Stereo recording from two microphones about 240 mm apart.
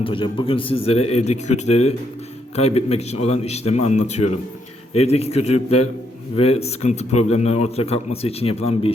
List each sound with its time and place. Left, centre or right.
0.0 s speech: left